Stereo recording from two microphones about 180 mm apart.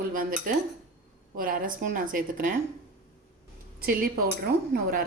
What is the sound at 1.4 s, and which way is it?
Speech, 50° right (ahead or behind).